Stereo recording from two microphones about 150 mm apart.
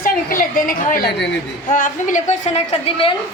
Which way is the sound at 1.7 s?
60° left (ahead or behind).